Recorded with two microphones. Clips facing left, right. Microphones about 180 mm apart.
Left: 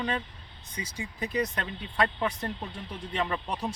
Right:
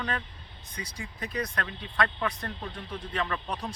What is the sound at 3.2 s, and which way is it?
Speech, 10° left (ahead or behind).